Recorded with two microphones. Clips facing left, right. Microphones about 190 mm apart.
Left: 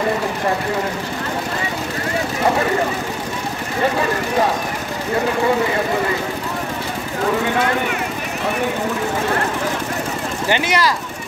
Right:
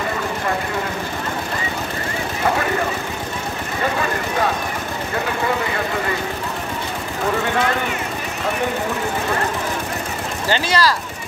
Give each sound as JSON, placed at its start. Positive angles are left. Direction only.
{"t": 10.5, "sound": "speech", "side_deg": 20}